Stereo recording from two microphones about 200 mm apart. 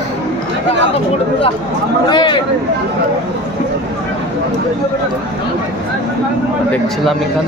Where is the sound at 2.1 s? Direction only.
25° left (ahead or behind).